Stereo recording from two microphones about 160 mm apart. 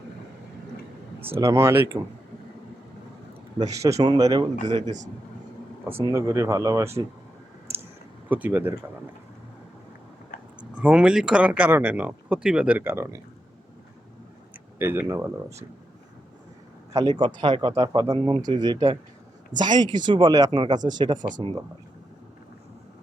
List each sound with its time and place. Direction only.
1.4 s speech: 15° right (ahead or behind)
3.7 s speech: 20° right (ahead or behind)
4.6 s speech: 50° right (ahead or behind)
5.8 s speech: 15° right (ahead or behind)
7.7 s clicking: 15° right (ahead or behind)
8.3 s speech: 10° right (ahead or behind)
10.8 s speech: 5° right (ahead or behind)
14.8 s speech: 15° right (ahead or behind)
16.9 s speech: 25° right (ahead or behind)